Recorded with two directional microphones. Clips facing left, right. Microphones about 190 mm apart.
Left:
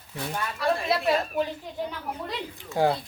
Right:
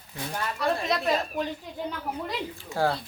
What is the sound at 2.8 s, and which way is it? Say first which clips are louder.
Speech: left 3 dB; 20° left (ahead or behind).